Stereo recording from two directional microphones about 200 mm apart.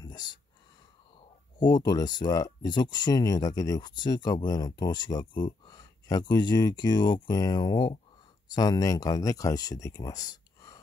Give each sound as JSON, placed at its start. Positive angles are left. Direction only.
{"t": 1.6, "sound": "speech", "side_deg": 20}